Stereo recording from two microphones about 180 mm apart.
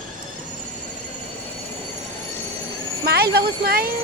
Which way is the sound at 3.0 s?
60° right (ahead or behind).